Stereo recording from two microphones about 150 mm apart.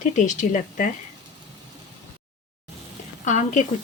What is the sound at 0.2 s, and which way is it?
Speech, 55° left (ahead or behind).